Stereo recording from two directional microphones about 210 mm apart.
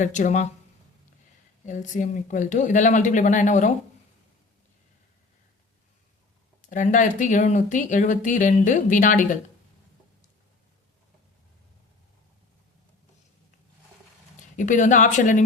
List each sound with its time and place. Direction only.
0.0 s speech: 35° left (ahead or behind)
1.6 s speech: 35° left (ahead or behind)
6.6 s speech: 35° left (ahead or behind)
14.5 s speech: 35° left (ahead or behind)